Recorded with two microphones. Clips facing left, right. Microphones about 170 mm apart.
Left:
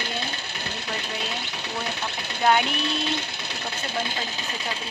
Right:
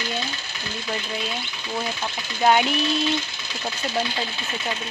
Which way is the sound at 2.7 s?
60° left (ahead or behind).